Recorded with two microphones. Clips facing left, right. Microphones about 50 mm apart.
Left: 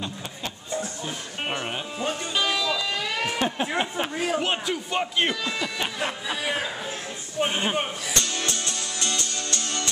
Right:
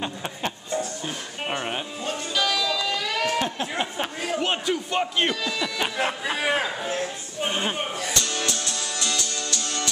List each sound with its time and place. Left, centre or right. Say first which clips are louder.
1.0 s music: even; centre
2.0 s music: even; left
3.4 s a sound: left 2 dB; centre
4.4 s a sound: right 1 dB; centre
6.2 s a man's voice: right 4 dB; right
7.4 s a man's voice: even; centre
8.5 s music: right 1 dB; left